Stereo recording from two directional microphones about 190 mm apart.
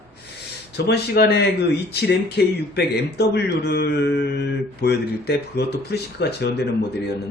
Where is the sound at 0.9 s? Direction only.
55° left (ahead or behind).